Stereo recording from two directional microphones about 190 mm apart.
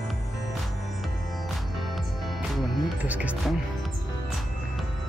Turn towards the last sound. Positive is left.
turn(degrees=-5)  # may be behind; listen again after turning